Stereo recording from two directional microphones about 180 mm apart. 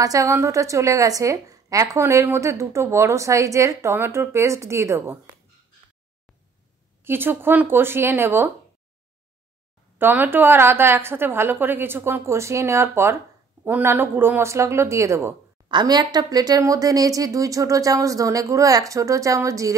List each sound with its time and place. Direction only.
0.0 s a woman's voice: 20° right (ahead or behind)
7.0 s a woman's voice: 10° right (ahead or behind)
9.9 s a woman's voice: 10° right (ahead or behind)